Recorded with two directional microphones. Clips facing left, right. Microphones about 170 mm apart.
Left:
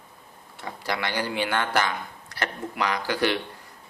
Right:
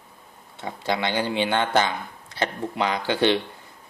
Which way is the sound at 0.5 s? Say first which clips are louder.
Right 4 dB; 25° right (ahead or behind).